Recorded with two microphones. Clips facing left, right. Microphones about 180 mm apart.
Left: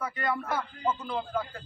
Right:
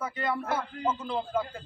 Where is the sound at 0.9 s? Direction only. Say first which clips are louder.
Even; 20° right (ahead or behind).